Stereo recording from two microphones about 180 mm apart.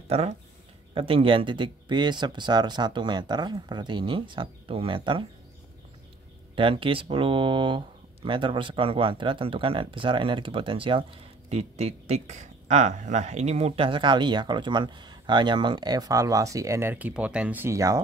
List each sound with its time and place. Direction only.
0.1 s speech: 35° right (ahead or behind)
6.5 s speech: 30° right (ahead or behind)